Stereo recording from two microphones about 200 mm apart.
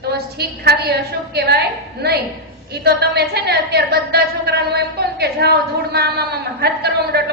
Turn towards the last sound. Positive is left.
turn(degrees=-55)  # may be behind; listen again after turning